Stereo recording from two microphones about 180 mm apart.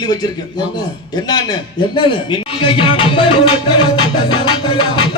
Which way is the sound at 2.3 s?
30° left (ahead or behind).